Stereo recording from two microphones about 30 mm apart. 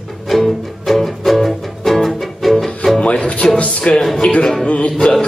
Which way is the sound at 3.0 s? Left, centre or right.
Left.